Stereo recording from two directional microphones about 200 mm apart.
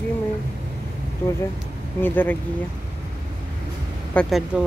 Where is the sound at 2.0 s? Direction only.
10° left (ahead or behind).